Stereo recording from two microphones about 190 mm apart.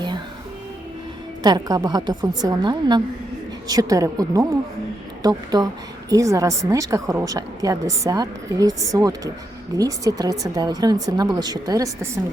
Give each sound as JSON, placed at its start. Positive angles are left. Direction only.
{"t": 1.4, "sound": "a woman's voice", "side_deg": -20}